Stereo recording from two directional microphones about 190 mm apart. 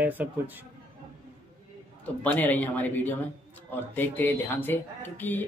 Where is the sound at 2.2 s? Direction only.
10° left (ahead or behind).